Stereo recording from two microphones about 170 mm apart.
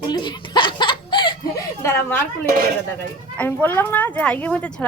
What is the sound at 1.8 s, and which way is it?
Speech, 15° left (ahead or behind).